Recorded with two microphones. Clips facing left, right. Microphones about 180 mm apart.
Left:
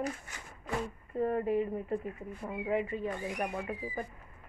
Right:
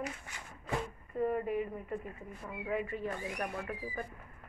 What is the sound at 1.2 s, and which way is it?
Speech, 30° left (ahead or behind).